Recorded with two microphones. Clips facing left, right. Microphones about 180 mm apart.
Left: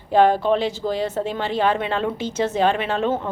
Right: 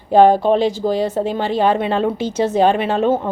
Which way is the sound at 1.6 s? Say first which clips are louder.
Right 5 dB; 40° right (ahead or behind).